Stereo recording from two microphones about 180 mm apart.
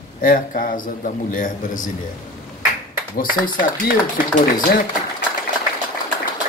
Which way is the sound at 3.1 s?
50° left (ahead or behind).